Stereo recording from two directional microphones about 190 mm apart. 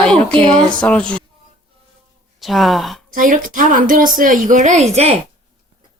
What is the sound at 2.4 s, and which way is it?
Speech, centre (ahead or behind).